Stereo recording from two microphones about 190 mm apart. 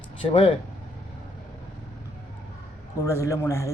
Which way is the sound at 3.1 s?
15° left (ahead or behind).